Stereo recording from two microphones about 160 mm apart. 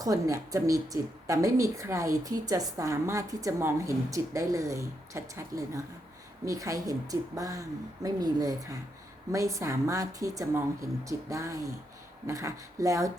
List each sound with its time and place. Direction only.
0.0 s a woman's voice: 20° right (ahead or behind)